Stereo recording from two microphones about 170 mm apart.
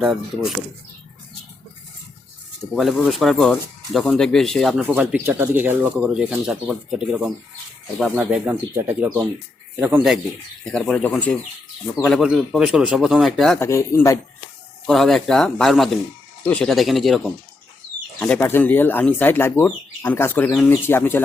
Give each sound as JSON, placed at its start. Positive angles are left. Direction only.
{"t": 0.0, "sound": "speech", "side_deg": -5}
{"t": 2.7, "sound": "speech", "side_deg": 0}
{"t": 10.7, "sound": "speech", "side_deg": 5}
{"t": 13.6, "sound": "speech", "side_deg": 15}
{"t": 14.8, "sound": "speech", "side_deg": 0}